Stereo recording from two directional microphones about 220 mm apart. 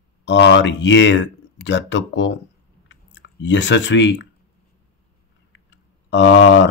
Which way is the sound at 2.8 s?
55° left (ahead or behind).